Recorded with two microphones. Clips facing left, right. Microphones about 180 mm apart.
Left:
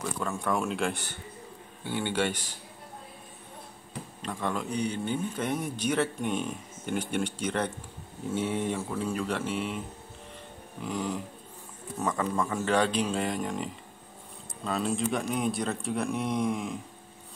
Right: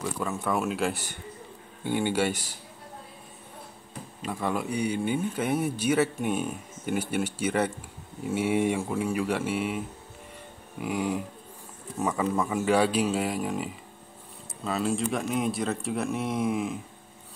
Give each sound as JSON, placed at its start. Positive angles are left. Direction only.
{"t": 0.2, "sound": "speech", "side_deg": -5}
{"t": 4.2, "sound": "speech", "side_deg": -5}
{"t": 10.8, "sound": "speech", "side_deg": -10}